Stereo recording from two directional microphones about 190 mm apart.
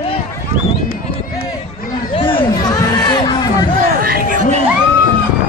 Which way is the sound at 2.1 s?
30° left (ahead or behind).